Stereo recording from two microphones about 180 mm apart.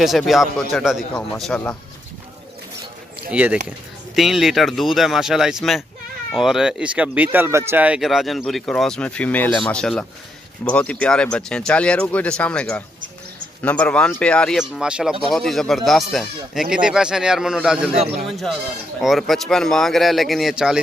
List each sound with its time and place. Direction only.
0.0 s speech: centre (ahead or behind)
3.3 s speech: 10° right (ahead or behind)
17.9 s a man's voice: 35° right (ahead or behind)
18.2 s speech: centre (ahead or behind)